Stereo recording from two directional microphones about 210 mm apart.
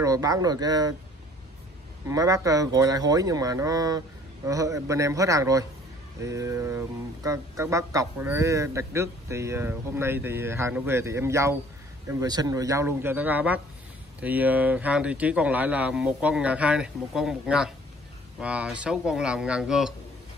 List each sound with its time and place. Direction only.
0.0 s speech: 15° right (ahead or behind)
2.0 s speech: 15° right (ahead or behind)